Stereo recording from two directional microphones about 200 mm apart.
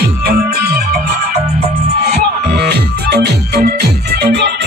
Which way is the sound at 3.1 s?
50° right (ahead or behind).